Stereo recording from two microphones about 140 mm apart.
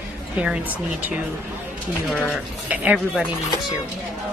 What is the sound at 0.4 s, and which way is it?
Speech, 10° right (ahead or behind).